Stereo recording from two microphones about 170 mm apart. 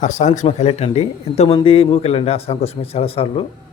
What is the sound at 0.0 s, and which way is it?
Speech, 45° left (ahead or behind).